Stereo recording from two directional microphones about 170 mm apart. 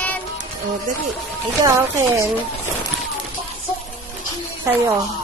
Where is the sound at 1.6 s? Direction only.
15° right (ahead or behind).